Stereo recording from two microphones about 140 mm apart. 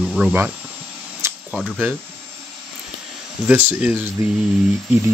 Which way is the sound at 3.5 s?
10° right (ahead or behind).